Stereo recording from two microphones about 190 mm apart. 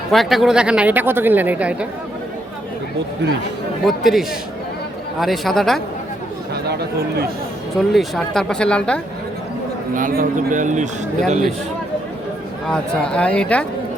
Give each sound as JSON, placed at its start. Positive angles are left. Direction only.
{"t": 0.1, "sound": "speech", "side_deg": 0}
{"t": 3.8, "sound": "speech", "side_deg": 0}
{"t": 6.5, "sound": "speech", "side_deg": -60}
{"t": 7.9, "sound": "speech", "side_deg": 0}
{"t": 9.9, "sound": "speech", "side_deg": -45}
{"t": 12.7, "sound": "speech", "side_deg": 5}